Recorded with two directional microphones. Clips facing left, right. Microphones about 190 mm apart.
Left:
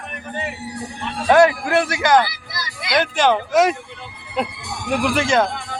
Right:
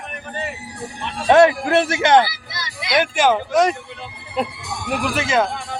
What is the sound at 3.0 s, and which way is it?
Speech, 5° right (ahead or behind).